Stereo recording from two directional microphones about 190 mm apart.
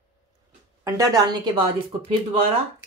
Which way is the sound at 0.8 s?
15° right (ahead or behind).